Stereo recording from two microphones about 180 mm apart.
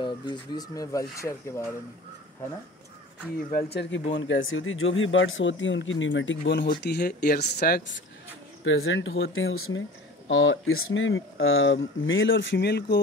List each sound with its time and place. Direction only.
0.0 s speech: 25° left (ahead or behind)
3.7 s speech: 80° left; by 7.8 s 55° left (ahead or behind)
8.6 s speech: 90° left; by 13.0 s 65° left (ahead or behind)